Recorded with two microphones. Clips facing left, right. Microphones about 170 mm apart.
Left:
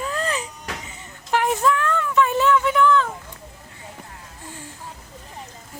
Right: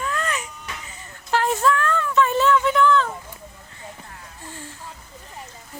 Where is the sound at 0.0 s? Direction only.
30° left (ahead or behind).